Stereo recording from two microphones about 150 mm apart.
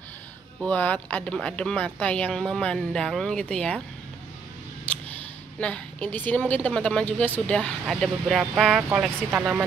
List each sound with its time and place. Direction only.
0.7 s speech: 10° left (ahead or behind)
4.9 s a sound: 10° left (ahead or behind)
5.6 s a woman's voice: 10° left (ahead or behind); by 9.7 s 10° right (ahead or behind)